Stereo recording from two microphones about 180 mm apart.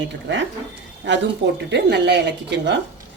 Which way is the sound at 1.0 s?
80° right.